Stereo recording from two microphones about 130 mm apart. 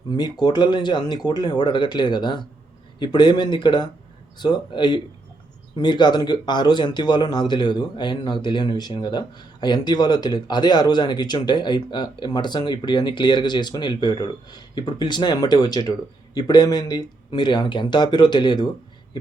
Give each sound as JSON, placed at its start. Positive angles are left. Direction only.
{"t": 0.2, "sound": "speech", "side_deg": 35}